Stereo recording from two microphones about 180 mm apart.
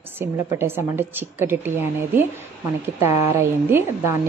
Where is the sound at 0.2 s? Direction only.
15° right (ahead or behind).